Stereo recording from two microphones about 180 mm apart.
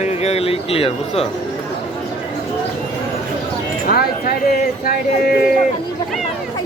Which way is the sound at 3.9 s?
60° left (ahead or behind).